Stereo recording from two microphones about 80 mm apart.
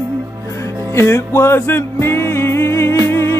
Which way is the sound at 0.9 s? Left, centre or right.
Left.